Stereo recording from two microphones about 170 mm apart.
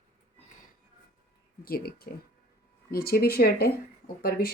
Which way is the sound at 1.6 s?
65° left (ahead or behind).